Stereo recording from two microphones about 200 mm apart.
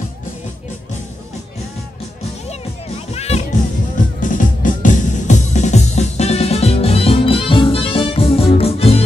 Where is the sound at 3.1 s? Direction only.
30° left (ahead or behind).